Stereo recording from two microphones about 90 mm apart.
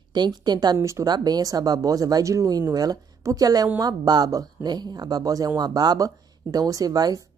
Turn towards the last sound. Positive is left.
turn(degrees=-45)  # may be behind; listen again after turning